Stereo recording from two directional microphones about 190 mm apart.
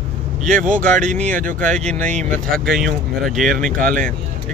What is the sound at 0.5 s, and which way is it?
Speech, 45° right (ahead or behind).